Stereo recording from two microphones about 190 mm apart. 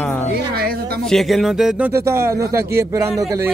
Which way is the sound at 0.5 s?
55° right (ahead or behind).